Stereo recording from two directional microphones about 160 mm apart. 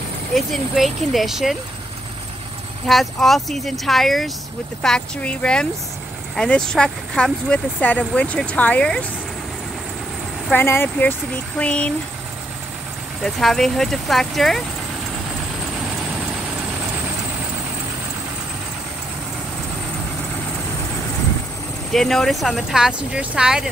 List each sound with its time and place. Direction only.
0.3 s speech: centre (ahead or behind)
2.9 s speech: centre (ahead or behind)
10.5 s speech: 15° left (ahead or behind)
13.2 s speech: centre (ahead or behind)
15.8 s vehicle: 5° right (ahead or behind)
21.9 s speech: centre (ahead or behind)